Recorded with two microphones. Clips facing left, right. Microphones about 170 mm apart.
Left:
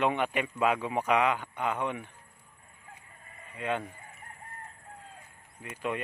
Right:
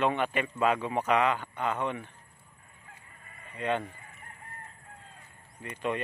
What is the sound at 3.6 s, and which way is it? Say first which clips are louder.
Speech: right 2 dB; 5° left (ahead or behind).